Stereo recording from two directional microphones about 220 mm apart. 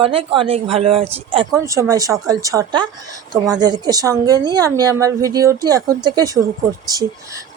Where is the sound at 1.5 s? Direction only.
15° right (ahead or behind).